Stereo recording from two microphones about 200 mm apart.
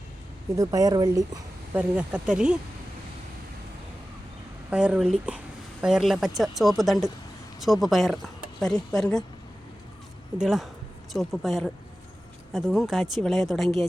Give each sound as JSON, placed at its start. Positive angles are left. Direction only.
{"t": 0.5, "sound": "speech", "side_deg": -15}
{"t": 1.7, "sound": "speech", "side_deg": -5}
{"t": 4.7, "sound": "speech", "side_deg": -5}
{"t": 10.3, "sound": "speech", "side_deg": 0}